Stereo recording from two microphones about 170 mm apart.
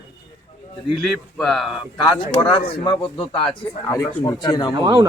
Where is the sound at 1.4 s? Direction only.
Centre (ahead or behind).